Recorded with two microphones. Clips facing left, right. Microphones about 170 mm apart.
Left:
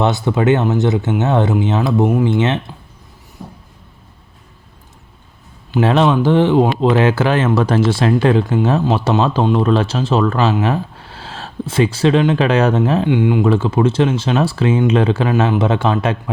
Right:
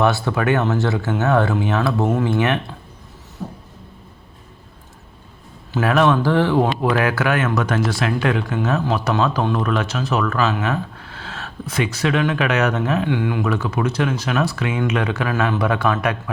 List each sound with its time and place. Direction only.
0.0 s speech: 20° left (ahead or behind)
5.8 s speech: 25° left (ahead or behind)
13.1 s speech: 20° left (ahead or behind)